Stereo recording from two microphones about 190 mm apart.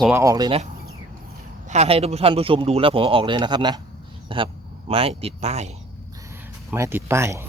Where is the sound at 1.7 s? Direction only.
35° right (ahead or behind).